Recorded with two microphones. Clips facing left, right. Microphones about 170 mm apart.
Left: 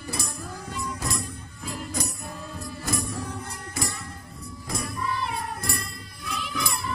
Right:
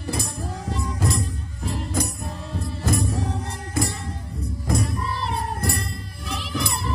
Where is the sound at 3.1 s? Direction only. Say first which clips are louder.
Right 6 dB; 40° right (ahead or behind).